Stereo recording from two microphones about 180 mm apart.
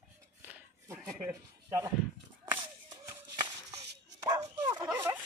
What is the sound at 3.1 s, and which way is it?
Dog, 20° right (ahead or behind).